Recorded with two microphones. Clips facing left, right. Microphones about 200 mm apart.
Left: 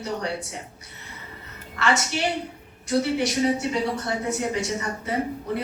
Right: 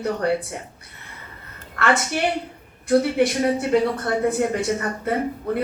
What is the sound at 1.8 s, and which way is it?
Speech, 55° right (ahead or behind).